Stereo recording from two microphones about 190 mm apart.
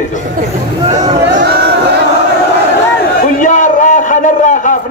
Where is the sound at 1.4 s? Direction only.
60° right (ahead or behind).